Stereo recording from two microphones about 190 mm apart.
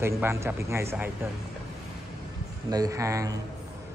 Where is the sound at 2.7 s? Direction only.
20° right (ahead or behind).